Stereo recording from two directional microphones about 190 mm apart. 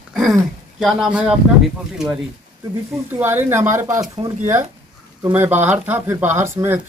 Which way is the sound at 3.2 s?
10° right (ahead or behind).